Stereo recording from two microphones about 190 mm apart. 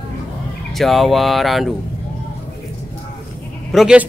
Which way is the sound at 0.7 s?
Centre (ahead or behind).